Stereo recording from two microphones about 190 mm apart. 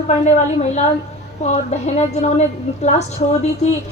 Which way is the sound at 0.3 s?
35° left (ahead or behind).